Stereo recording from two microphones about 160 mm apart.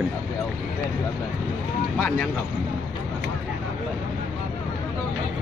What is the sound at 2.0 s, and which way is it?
Speech, 5° left (ahead or behind).